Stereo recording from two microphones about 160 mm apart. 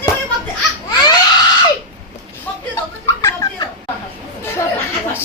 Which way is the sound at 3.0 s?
20° left (ahead or behind).